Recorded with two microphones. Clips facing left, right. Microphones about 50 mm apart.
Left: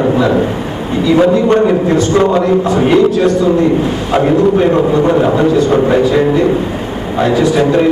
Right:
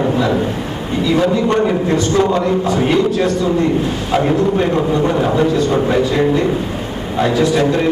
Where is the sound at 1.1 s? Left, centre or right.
Centre.